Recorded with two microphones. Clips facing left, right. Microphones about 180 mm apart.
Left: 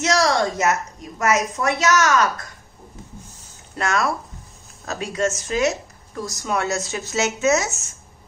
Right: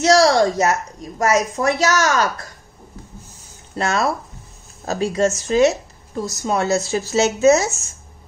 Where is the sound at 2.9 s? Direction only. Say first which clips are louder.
Right 2 dB; 20° left (ahead or behind).